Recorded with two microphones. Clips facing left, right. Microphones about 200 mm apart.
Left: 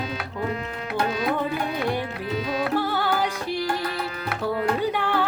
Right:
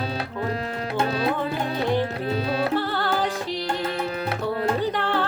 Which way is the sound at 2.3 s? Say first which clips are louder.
Right 2 dB; 30° right (ahead or behind).